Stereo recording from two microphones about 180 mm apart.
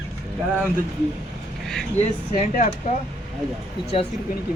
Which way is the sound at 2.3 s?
40° left (ahead or behind).